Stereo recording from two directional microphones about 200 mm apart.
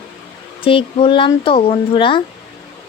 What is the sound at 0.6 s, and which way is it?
Speech, 25° left (ahead or behind).